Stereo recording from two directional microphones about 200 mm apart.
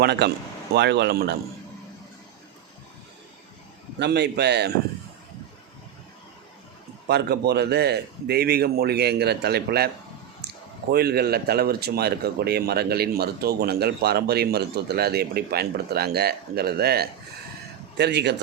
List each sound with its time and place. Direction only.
0.0 s speech: 55° right (ahead or behind)
3.9 s speech: 55° right (ahead or behind)
7.1 s a man's voice: 55° right (ahead or behind)
10.9 s a man's voice: 50° right (ahead or behind)